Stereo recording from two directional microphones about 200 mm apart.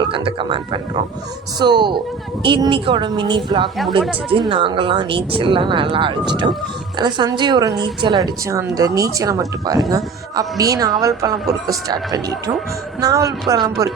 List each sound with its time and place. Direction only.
0.0 s speech: 25° right (ahead or behind)